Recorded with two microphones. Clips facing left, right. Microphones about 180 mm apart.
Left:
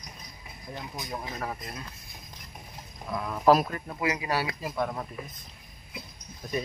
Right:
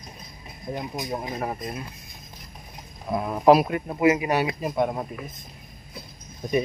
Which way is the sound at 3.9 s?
25° right (ahead or behind).